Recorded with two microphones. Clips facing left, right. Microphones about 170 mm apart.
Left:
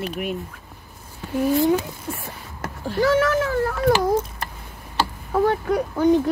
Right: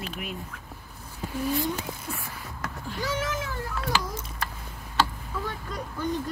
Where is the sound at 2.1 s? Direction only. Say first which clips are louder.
Left 5 dB; 25° left (ahead or behind).